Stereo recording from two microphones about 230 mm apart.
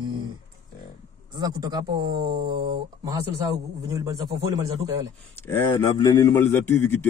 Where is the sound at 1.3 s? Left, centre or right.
Centre.